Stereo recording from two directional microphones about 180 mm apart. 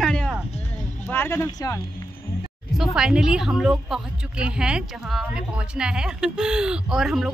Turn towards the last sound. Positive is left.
turn(degrees=0)  # may be behind; listen again after turning